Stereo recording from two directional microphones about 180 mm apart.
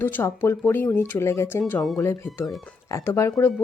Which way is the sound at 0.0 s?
10° left (ahead or behind).